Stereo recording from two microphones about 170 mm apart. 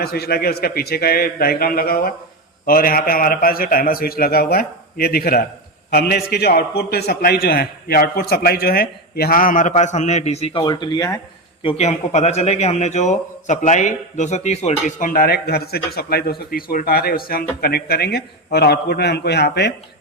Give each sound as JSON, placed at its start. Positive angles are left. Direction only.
{"t": 0.0, "sound": "a man's voice", "side_deg": 65}
{"t": 10.6, "sound": "speech", "side_deg": 25}
{"t": 11.6, "sound": "a man's voice", "side_deg": 35}